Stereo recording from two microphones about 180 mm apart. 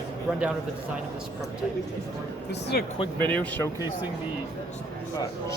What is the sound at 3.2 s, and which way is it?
Speech, 10° left (ahead or behind).